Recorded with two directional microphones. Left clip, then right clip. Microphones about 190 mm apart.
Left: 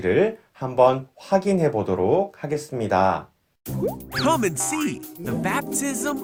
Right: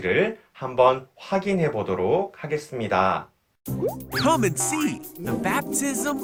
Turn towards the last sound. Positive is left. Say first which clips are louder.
# even
turn(degrees=0)  # may be behind; listen again after turning